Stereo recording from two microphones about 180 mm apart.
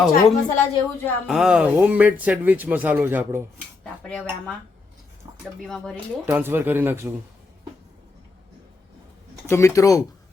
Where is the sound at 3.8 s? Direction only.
5° left (ahead or behind).